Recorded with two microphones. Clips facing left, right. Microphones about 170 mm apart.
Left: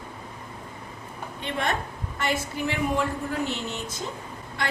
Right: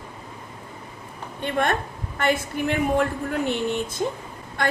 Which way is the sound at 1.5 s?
50° right (ahead or behind).